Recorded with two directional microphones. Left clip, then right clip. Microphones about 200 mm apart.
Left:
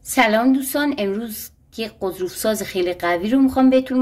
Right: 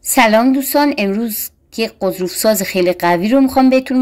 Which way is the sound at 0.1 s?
35° right (ahead or behind).